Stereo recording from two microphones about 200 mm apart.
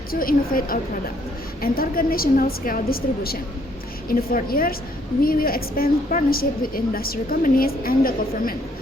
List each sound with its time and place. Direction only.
0.1 s a woman's voice: 45° left (ahead or behind)